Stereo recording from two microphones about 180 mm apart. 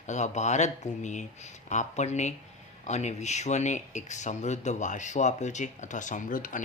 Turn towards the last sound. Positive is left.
turn(degrees=50)  # may be behind; listen again after turning